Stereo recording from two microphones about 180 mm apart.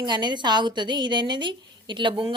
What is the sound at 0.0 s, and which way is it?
A woman's voice, 25° right (ahead or behind).